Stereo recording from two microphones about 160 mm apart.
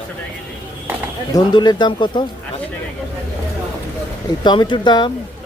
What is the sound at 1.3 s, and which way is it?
Speech, 25° left (ahead or behind).